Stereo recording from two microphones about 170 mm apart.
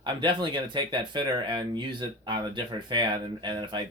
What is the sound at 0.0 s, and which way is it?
Speech, 25° right (ahead or behind).